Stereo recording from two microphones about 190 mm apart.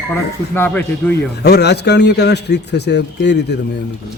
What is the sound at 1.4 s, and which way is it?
A man's voice, 60° left (ahead or behind).